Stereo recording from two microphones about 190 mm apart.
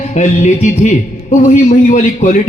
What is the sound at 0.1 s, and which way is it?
A man's voice, 40° left (ahead or behind).